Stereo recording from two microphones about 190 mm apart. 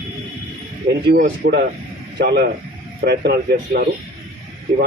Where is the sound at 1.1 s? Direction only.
50° right (ahead or behind).